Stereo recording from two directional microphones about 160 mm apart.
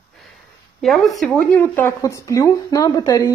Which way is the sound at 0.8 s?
Centre (ahead or behind).